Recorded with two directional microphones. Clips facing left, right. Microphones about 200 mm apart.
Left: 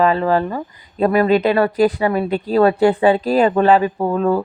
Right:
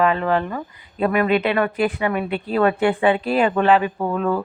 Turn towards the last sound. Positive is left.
turn(degrees=35)  # may be behind; listen again after turning